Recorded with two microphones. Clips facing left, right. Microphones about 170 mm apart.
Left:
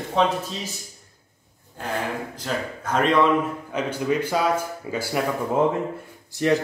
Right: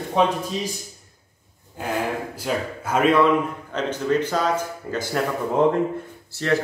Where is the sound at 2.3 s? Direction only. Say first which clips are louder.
Right 3 dB; 10° right (ahead or behind).